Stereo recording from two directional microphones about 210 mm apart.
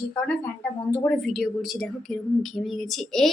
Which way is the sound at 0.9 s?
10° left (ahead or behind).